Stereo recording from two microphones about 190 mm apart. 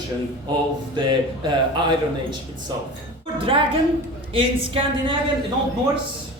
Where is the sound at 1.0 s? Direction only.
25° right (ahead or behind).